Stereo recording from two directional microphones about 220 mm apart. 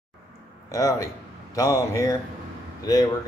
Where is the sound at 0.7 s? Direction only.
15° left (ahead or behind).